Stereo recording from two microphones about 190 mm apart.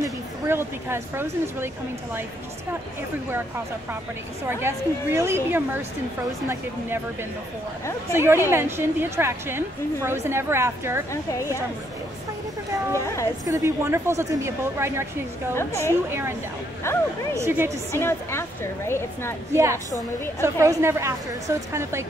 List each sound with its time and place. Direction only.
0.0 s a woman's voice: 10° right (ahead or behind)
3.3 s a woman's voice: 10° right (ahead or behind)
8.1 s a woman's voice: 15° right (ahead or behind)
13.0 s a woman's voice: 15° left (ahead or behind)
13.5 s a woman's voice: 15° right (ahead or behind)
16.8 s a woman's voice: 15° left (ahead or behind)
17.4 s a woman's voice: 15° right (ahead or behind)
17.9 s a woman's voice: 15° left (ahead or behind)
19.5 s a woman's voice: 15° right (ahead or behind)